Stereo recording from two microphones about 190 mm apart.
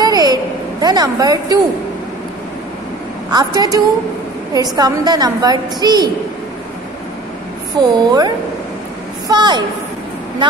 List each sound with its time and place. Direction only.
0.0 s a sound: 20° right (ahead or behind)
3.3 s a woman's voice: 20° right (ahead or behind)
7.9 s a woman's voice: 20° right (ahead or behind)
9.3 s a woman's voice: 25° right (ahead or behind)